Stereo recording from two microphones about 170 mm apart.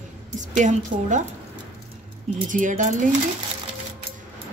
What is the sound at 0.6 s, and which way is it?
Speech, 45° right (ahead or behind).